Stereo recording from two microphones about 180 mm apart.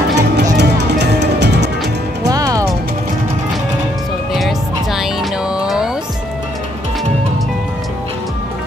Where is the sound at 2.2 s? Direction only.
20° right (ahead or behind).